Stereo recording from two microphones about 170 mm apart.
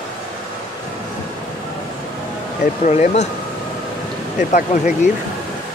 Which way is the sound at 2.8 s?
40° left (ahead or behind).